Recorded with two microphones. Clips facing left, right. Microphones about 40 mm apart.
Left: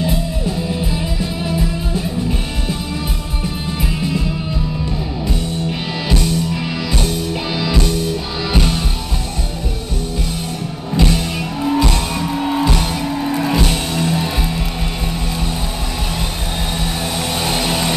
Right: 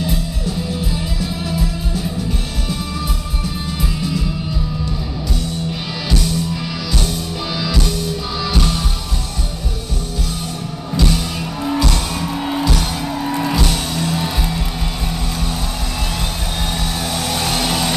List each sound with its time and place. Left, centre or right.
5.3 s music: left
11.0 s music: centre
16.8 s vehicle: centre